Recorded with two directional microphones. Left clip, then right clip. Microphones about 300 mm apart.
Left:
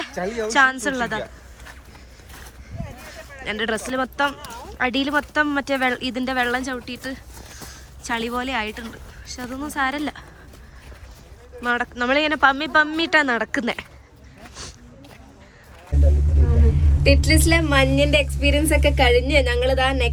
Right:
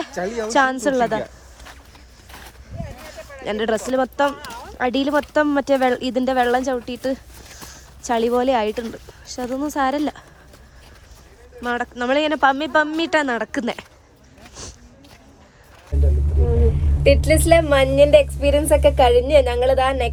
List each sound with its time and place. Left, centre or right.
0.0 s a sound: centre
0.5 s speech: centre
3.4 s speech: centre
11.6 s speech: centre
14.4 s a sound: centre
17.0 s speech: centre